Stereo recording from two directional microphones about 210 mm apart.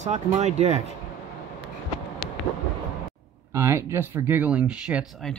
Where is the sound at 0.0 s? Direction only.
35° right (ahead or behind).